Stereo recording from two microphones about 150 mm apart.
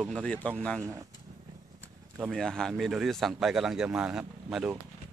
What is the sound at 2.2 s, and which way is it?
Speech, centre (ahead or behind).